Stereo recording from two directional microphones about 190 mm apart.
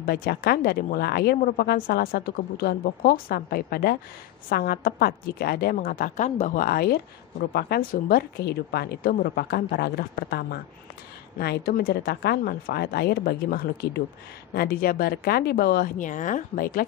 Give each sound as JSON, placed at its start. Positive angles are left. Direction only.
{"t": 0.0, "sound": "a woman's voice", "side_deg": 50}